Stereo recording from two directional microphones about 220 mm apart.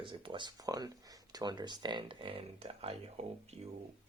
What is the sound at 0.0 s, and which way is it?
Speech, 25° right (ahead or behind).